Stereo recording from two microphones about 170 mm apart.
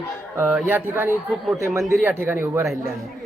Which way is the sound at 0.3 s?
10° right (ahead or behind).